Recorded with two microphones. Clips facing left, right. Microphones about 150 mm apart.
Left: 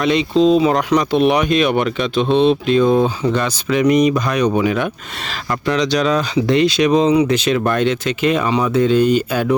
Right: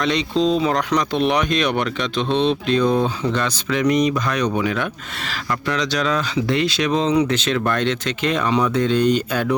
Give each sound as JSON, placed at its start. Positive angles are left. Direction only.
{"t": 0.0, "sound": "speech", "side_deg": 5}